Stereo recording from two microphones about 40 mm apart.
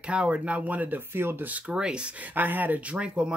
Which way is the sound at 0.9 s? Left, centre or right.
Right.